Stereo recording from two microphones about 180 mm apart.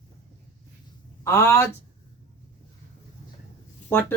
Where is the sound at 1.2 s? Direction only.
15° left (ahead or behind).